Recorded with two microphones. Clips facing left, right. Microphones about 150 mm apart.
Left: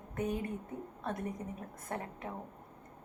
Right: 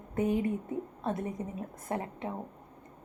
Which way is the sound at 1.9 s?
20° right (ahead or behind).